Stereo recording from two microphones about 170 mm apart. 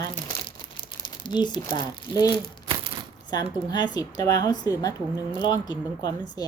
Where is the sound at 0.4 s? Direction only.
30° left (ahead or behind).